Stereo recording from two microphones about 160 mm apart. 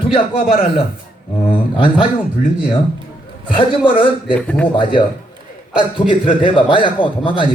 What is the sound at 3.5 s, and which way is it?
Speech, 30° left (ahead or behind).